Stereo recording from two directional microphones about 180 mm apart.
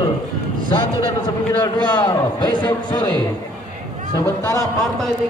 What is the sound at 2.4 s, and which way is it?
Speech, 25° left (ahead or behind).